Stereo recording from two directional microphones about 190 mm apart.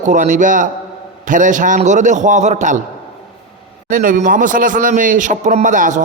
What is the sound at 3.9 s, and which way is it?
A man's voice, 45° right (ahead or behind).